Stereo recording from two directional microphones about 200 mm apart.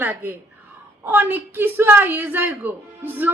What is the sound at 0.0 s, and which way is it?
Speech, 10° right (ahead or behind).